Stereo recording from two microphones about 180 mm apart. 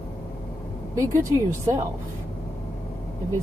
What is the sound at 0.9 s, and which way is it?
Speech, 15° right (ahead or behind).